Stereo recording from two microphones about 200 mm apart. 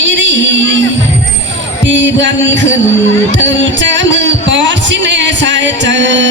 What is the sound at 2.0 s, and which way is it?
Heart murmur, 65° right (ahead or behind).